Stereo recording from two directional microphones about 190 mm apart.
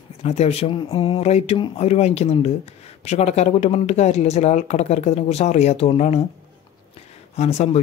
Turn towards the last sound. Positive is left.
turn(degrees=35)  # may be behind; listen again after turning